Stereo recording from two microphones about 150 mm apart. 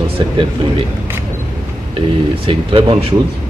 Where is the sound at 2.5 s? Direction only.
35° right (ahead or behind).